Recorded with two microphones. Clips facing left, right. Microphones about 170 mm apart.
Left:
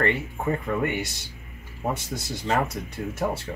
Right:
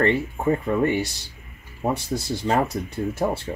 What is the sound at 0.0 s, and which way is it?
Speech, 30° right (ahead or behind).